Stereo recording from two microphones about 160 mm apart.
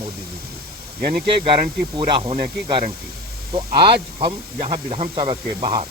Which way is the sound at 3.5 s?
30° right (ahead or behind).